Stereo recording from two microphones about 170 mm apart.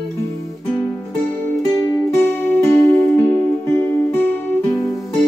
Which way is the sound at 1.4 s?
15° left (ahead or behind).